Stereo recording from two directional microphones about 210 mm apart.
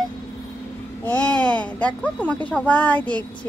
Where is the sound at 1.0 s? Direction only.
5° left (ahead or behind).